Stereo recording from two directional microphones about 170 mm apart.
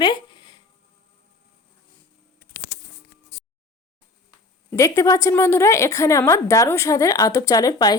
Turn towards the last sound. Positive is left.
turn(degrees=20)  # may be behind; listen again after turning